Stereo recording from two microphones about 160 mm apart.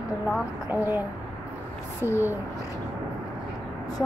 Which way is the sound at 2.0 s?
15° right (ahead or behind).